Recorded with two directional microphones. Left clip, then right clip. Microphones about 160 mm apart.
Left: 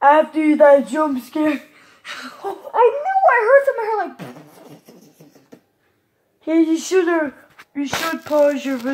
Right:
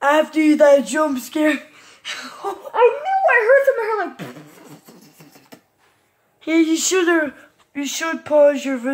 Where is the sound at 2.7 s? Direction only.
10° right (ahead or behind); by 5.2 s 30° right (ahead or behind).